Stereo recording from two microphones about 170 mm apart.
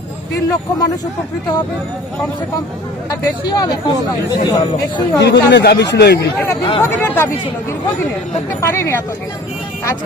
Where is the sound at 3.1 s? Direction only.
25° left (ahead or behind).